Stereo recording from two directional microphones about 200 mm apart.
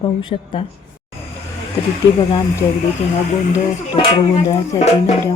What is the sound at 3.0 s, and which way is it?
A woman's voice, 35° left (ahead or behind).